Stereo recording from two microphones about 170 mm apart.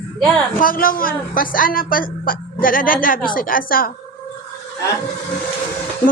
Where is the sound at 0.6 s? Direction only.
55° left (ahead or behind).